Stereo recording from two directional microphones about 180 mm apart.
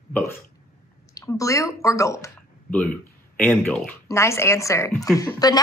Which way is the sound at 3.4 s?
10° left (ahead or behind).